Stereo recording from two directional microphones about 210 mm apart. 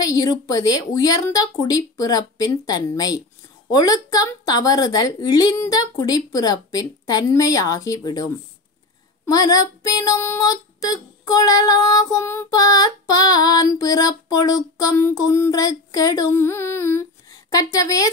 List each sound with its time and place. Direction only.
0.0 s speech: 15° left (ahead or behind)